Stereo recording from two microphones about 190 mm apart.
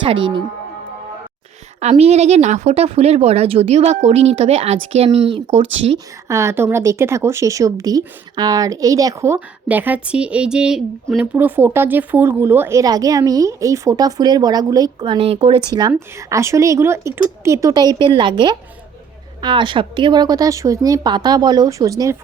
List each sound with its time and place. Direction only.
0.0 s speech: 25° right (ahead or behind)
1.8 s speech: 35° right (ahead or behind)
6.2 s speech: 15° right (ahead or behind); by 15.6 s 30° right (ahead or behind)
15.7 s speech: 15° right (ahead or behind)